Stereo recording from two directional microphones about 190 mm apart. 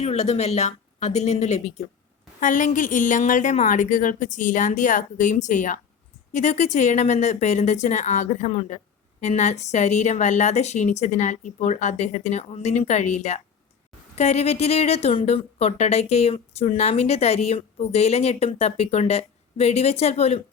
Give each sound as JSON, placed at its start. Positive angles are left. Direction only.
{"t": 0.0, "sound": "a woman's voice", "side_deg": 35}